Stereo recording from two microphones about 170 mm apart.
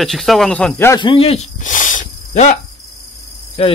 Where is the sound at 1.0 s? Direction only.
30° left (ahead or behind).